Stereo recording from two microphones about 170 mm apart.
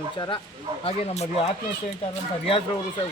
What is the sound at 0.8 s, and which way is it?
Speech, 40° left (ahead or behind).